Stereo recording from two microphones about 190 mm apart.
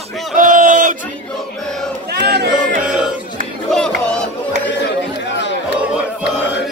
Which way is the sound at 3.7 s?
5° left (ahead or behind).